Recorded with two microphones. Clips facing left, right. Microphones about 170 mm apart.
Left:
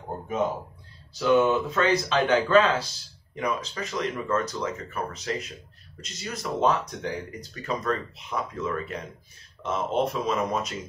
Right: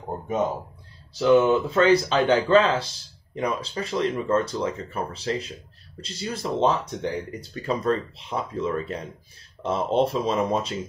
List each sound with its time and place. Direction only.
1.1 s speech: 30° right (ahead or behind)